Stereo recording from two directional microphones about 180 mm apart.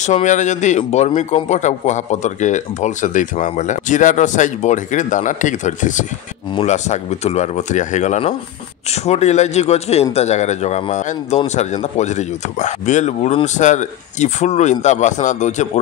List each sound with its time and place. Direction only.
0.0 s a man's voice: 40° left (ahead or behind)